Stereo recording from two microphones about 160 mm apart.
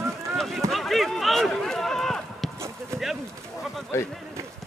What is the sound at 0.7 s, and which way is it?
Run, centre (ahead or behind).